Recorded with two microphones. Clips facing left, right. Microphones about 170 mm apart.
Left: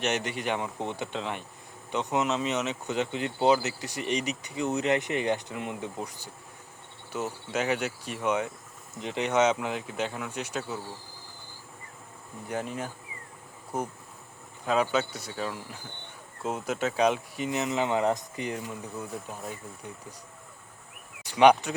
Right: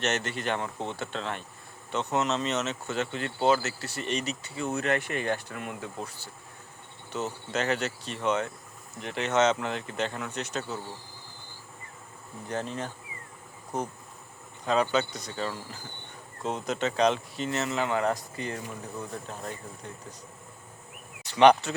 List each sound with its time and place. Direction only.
0.0 s speech: 10° left (ahead or behind)
12.5 s speech: 10° left (ahead or behind)
21.2 s speech: 10° left (ahead or behind)